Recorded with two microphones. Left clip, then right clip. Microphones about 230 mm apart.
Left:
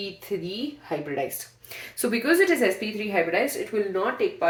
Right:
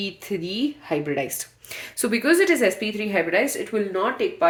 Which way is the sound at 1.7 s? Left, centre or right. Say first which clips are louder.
Right 2 dB; right.